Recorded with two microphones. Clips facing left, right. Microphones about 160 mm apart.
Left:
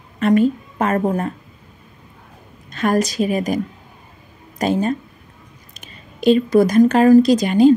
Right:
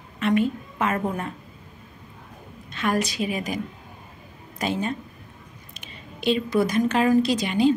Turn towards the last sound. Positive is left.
turn(degrees=45)  # may be behind; listen again after turning